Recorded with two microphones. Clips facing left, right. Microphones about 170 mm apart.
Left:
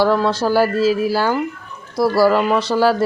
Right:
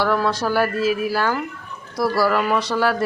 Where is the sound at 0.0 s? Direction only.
30° left (ahead or behind).